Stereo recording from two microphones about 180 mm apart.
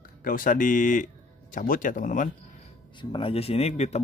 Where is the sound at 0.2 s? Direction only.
50° left (ahead or behind).